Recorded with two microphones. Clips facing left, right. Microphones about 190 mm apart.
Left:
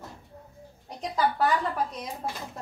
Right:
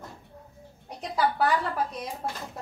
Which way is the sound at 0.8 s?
5° right (ahead or behind).